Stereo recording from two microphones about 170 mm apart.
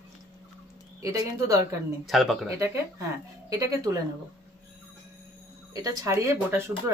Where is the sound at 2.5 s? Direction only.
20° right (ahead or behind).